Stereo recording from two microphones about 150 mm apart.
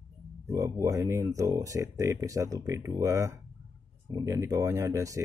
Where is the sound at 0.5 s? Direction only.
20° right (ahead or behind).